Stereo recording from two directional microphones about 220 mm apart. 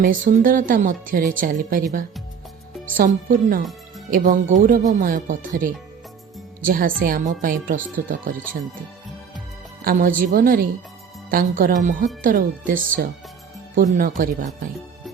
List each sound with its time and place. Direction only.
0.0 s a woman's voice: 40° right (ahead or behind)
3.0 s a woman's voice: 40° right (ahead or behind)
9.8 s a woman's voice: 40° right (ahead or behind)